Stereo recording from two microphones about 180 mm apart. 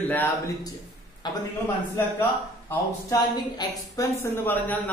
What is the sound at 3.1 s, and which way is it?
A man's voice, 20° left (ahead or behind).